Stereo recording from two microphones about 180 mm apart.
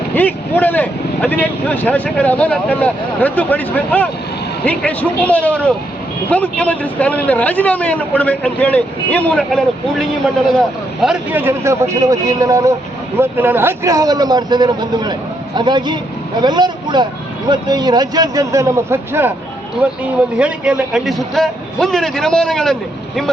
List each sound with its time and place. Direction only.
0.1 s speech: 10° left (ahead or behind)
11.0 s a man's voice: 5° right (ahead or behind)